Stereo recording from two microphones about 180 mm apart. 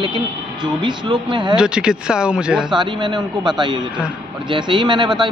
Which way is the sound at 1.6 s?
5° right (ahead or behind).